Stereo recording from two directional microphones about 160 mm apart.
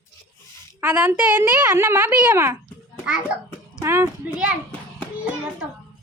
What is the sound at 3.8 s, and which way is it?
Speech, 15° right (ahead or behind).